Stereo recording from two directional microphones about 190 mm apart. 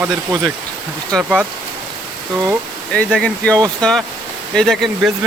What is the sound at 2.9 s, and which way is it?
Speech, 5° left (ahead or behind).